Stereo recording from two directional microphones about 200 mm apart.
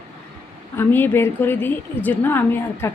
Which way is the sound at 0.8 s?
10° left (ahead or behind).